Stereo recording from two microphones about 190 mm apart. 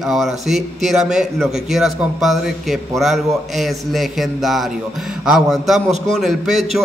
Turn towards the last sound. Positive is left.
turn(degrees=0)  # may be behind; listen again after turning